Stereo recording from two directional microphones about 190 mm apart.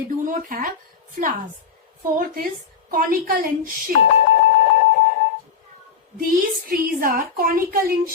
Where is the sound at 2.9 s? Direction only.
50° right (ahead or behind).